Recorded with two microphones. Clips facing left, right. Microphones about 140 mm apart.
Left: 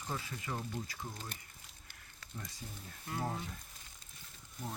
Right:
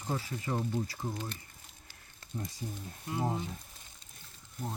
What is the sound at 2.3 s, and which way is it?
Speech, 30° right (ahead or behind).